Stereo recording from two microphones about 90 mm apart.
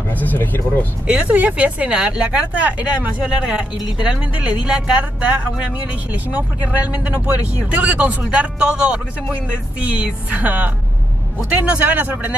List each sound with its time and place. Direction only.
0.1 s speech: 20° left (ahead or behind)
1.0 s speech: 15° right (ahead or behind)